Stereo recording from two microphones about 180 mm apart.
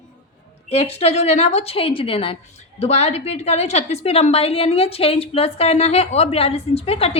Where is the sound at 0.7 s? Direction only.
35° left (ahead or behind).